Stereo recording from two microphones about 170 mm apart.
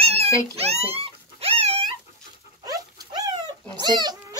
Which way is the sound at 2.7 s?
20° right (ahead or behind).